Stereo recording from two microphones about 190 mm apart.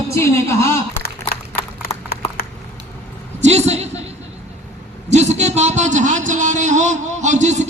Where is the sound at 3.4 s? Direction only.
35° right (ahead or behind).